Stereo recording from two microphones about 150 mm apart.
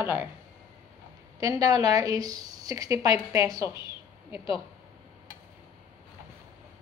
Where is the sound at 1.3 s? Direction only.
25° right (ahead or behind).